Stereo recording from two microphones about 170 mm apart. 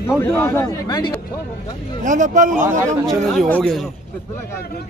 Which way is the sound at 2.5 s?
15° right (ahead or behind).